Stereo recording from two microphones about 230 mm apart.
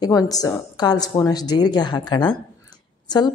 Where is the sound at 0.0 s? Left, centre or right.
Centre.